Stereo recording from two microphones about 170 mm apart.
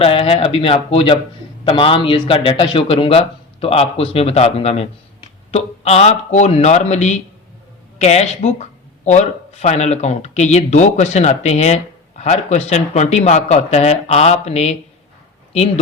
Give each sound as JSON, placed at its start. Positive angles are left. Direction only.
{"t": 0.0, "sound": "speech", "side_deg": 35}